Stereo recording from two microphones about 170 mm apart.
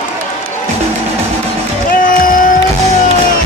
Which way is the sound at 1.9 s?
55° left (ahead or behind).